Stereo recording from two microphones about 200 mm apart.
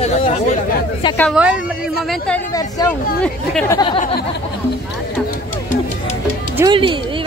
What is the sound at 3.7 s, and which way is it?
Speech, 25° left (ahead or behind).